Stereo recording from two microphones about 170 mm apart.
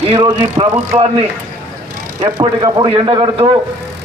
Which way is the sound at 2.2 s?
25° right (ahead or behind).